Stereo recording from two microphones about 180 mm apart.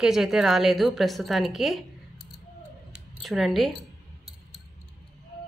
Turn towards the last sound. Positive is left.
turn(degrees=0)  # may be behind; listen again after turning